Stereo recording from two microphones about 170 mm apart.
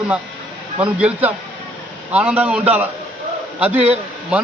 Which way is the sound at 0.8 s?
5° right (ahead or behind).